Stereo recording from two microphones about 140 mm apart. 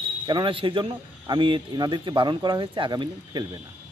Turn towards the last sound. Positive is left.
turn(degrees=-30)  # may be behind; listen again after turning